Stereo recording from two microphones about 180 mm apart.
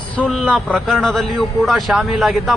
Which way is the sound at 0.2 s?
Centre (ahead or behind).